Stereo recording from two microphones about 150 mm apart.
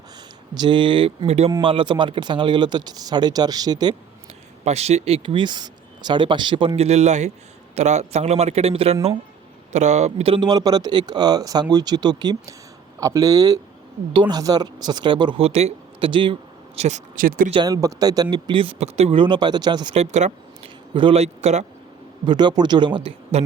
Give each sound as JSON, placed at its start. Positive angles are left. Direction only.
{"t": 0.5, "sound": "speech", "side_deg": -30}
{"t": 4.6, "sound": "speech", "side_deg": -45}
{"t": 6.7, "sound": "speech", "side_deg": -45}
{"t": 17.2, "sound": "speech", "side_deg": -70}
{"t": 17.7, "sound": "speech", "side_deg": -25}
{"t": 20.0, "sound": "speech", "side_deg": -50}
{"t": 20.9, "sound": "speech", "side_deg": -35}
{"t": 22.3, "sound": "speech", "side_deg": -30}